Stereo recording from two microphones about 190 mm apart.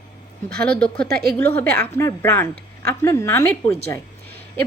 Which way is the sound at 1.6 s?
55° right (ahead or behind).